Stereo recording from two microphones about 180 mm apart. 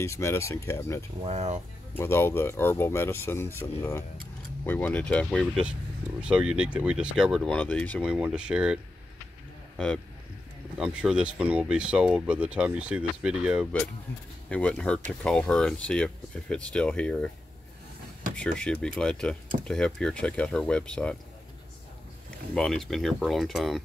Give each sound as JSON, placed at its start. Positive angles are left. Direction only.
{"t": 0.0, "sound": "speech", "side_deg": 15}
{"t": 1.2, "sound": "speech", "side_deg": -40}
{"t": 2.0, "sound": "speech", "side_deg": 15}
{"t": 7.5, "sound": "speech", "side_deg": 10}
{"t": 8.0, "sound": "speech", "side_deg": -5}
{"t": 10.8, "sound": "speech", "side_deg": -5}
{"t": 14.5, "sound": "speech", "side_deg": 5}
{"t": 18.3, "sound": "speech", "side_deg": 5}
{"t": 22.5, "sound": "speech", "side_deg": 5}